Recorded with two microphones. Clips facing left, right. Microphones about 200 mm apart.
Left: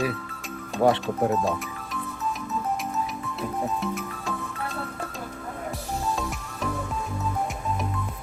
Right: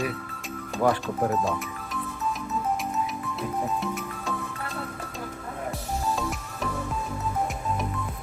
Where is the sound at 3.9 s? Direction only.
Centre (ahead or behind).